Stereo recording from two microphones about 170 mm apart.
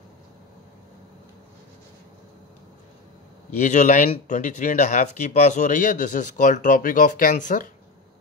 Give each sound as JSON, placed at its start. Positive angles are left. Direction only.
{"t": 3.5, "sound": "speech", "side_deg": 45}